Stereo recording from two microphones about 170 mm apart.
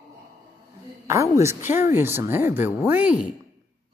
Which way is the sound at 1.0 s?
15° right (ahead or behind).